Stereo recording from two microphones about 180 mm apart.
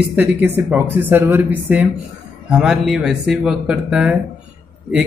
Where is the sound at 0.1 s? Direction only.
10° right (ahead or behind).